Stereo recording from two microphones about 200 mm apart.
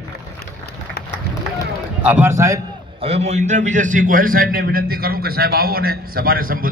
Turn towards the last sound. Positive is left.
turn(degrees=-45)  # may be behind; listen again after turning